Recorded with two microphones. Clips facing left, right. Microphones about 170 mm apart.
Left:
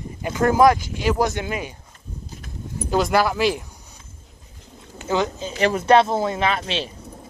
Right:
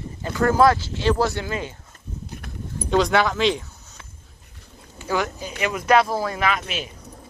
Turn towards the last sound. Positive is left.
turn(degrees=30)  # may be behind; listen again after turning